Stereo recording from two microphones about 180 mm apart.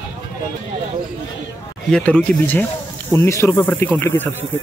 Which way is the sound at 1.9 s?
5° left (ahead or behind).